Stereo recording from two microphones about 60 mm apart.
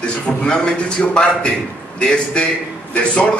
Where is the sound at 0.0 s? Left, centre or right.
Centre.